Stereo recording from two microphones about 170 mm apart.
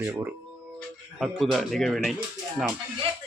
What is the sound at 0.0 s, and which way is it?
Speech, 15° right (ahead or behind).